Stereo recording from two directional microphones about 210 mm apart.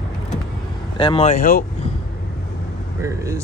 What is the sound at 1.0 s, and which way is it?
Speech, 25° left (ahead or behind).